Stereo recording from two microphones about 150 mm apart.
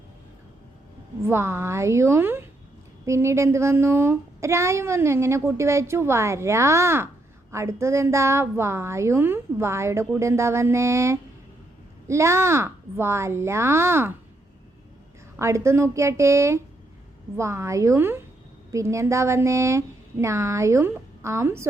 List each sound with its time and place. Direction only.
1.2 s a woman's voice: 15° right (ahead or behind)
15.4 s a woman's voice: 20° right (ahead or behind)